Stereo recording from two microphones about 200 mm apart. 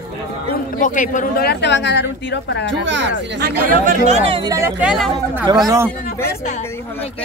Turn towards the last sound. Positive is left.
turn(degrees=-15)  # may be behind; listen again after turning